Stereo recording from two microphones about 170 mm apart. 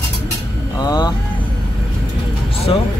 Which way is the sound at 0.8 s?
25° left (ahead or behind).